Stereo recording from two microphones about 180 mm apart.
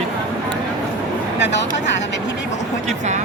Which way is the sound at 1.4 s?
75° left (ahead or behind).